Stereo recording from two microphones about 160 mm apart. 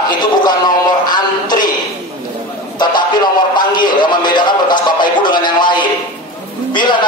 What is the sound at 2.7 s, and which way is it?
A man's voice, 25° left (ahead or behind).